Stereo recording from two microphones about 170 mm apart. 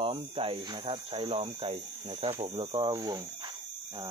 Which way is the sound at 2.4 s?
25° right (ahead or behind).